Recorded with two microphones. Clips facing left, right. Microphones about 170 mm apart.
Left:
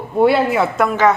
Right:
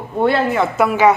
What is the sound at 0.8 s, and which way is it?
Speech, 10° right (ahead or behind).